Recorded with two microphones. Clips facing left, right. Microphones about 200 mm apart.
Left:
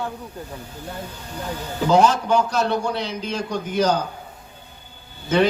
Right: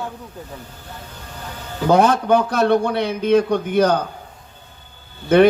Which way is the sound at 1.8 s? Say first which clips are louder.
Right 3 dB; 55° right (ahead or behind).